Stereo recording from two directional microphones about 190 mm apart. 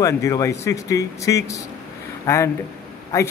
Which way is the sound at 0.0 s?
15° left (ahead or behind).